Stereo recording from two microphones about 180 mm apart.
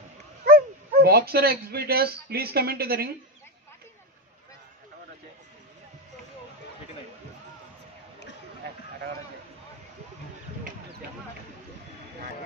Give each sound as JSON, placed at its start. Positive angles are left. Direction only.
{"t": 0.5, "sound": "speech", "side_deg": -60}